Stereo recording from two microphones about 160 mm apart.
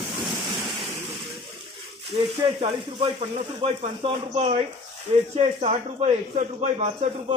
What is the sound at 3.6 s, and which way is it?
Speech, 40° right (ahead or behind).